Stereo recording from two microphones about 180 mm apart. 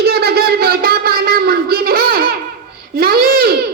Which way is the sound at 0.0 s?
60° right (ahead or behind).